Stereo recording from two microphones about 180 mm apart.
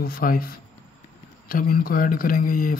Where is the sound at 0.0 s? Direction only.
55° left (ahead or behind).